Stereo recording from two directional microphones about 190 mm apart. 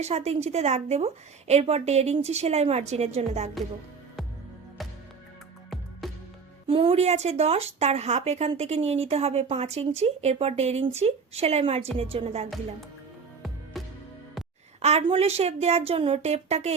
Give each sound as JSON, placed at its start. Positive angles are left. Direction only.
{"t": 0.0, "sound": "a woman's voice", "side_deg": -35}
{"t": 6.0, "sound": "music", "side_deg": 0}
{"t": 6.7, "sound": "a woman's voice", "side_deg": -30}
{"t": 13.7, "sound": "music", "side_deg": 0}
{"t": 14.8, "sound": "a woman's voice", "side_deg": -35}